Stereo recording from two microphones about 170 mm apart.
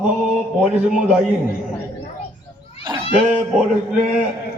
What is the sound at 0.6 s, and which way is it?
Speech, 5° right (ahead or behind).